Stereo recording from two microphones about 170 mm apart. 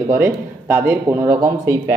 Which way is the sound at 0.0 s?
20° right (ahead or behind).